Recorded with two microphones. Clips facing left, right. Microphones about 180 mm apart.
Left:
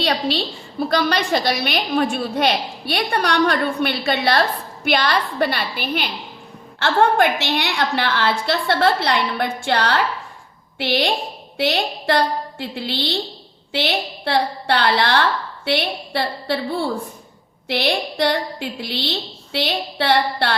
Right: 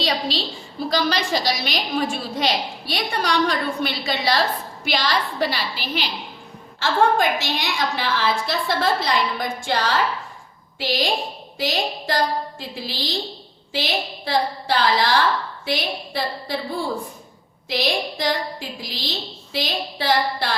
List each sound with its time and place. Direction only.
0.0 s a sound: 60° left (ahead or behind)
0.8 s a woman's voice: 60° left (ahead or behind)
17.7 s a woman's voice: 65° left (ahead or behind)